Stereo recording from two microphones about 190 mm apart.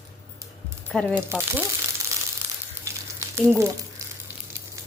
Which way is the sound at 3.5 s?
15° right (ahead or behind).